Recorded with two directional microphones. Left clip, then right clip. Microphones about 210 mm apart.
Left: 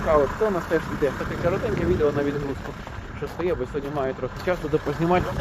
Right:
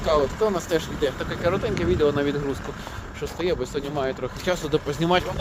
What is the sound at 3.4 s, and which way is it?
Speech, 20° right (ahead or behind).